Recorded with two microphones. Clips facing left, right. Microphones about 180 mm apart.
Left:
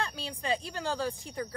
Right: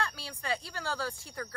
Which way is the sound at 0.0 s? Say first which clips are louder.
Left 2 dB; 20° left (ahead or behind).